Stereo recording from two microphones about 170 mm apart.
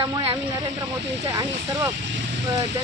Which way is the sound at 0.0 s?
30° right (ahead or behind).